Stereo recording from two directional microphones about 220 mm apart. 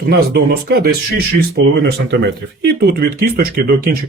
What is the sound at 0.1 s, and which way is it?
Speech, 45° right (ahead or behind).